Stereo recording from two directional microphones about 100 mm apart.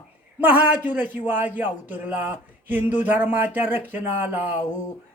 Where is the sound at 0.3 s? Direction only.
15° right (ahead or behind).